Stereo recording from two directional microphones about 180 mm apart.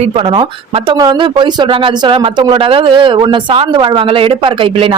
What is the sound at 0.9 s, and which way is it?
Speech, 25° right (ahead or behind).